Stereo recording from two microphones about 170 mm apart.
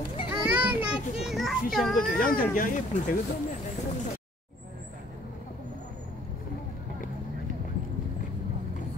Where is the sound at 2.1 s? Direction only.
55° left (ahead or behind).